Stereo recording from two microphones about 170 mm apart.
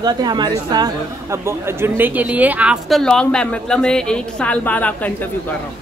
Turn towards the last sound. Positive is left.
turn(degrees=10)  # may be behind; listen again after turning